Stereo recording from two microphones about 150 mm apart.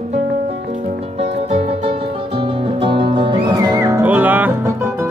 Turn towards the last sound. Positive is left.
turn(degrees=-10)  # may be behind; listen again after turning